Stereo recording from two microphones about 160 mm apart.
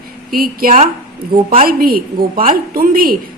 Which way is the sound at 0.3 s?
65° right (ahead or behind).